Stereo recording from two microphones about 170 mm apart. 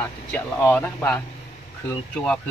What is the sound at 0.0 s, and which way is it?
Speech, 10° left (ahead or behind).